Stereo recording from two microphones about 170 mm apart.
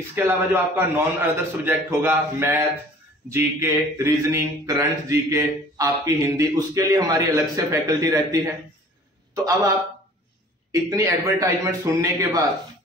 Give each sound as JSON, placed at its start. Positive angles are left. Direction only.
{"t": 0.1, "sound": "a man's voice", "side_deg": -10}
{"t": 10.7, "sound": "speech", "side_deg": -20}